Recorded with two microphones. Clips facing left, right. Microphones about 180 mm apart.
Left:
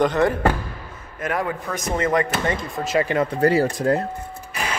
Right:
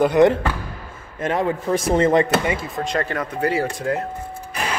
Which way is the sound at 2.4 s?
10° right (ahead or behind).